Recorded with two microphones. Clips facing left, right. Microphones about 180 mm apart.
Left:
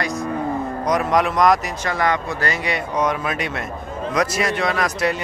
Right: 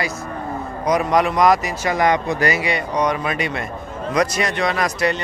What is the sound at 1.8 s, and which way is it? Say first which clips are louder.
Speech: right 4 dB; 15° right (ahead or behind).